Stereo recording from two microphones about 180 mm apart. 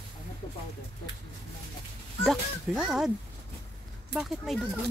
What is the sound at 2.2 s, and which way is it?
Speech, centre (ahead or behind).